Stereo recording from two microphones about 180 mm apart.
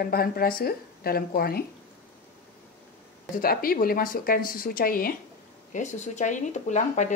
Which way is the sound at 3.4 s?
55° left (ahead or behind).